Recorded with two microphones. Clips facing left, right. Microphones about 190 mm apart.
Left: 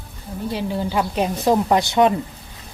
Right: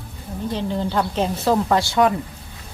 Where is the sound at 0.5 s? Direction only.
10° left (ahead or behind).